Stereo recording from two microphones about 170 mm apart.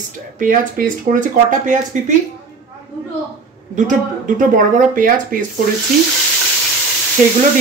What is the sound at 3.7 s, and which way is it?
Speech, 50° right (ahead or behind).